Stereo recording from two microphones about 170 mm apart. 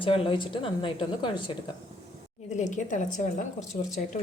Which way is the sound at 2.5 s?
45° left (ahead or behind).